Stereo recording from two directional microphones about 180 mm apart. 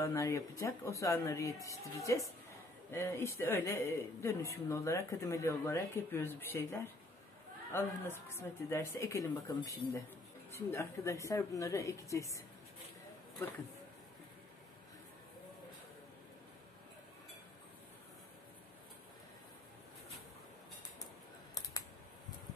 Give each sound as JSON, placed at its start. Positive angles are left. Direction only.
{"t": 0.0, "sound": "speech", "side_deg": 15}